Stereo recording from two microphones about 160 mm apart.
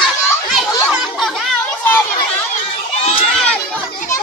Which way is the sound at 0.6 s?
Centre (ahead or behind).